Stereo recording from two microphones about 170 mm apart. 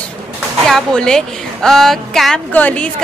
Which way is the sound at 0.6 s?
5° left (ahead or behind).